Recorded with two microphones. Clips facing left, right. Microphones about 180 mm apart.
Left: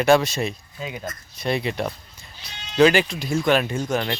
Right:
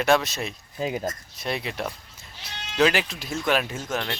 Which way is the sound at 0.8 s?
40° right (ahead or behind).